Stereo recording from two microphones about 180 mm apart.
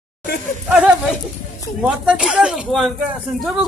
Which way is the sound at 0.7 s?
5° right (ahead or behind).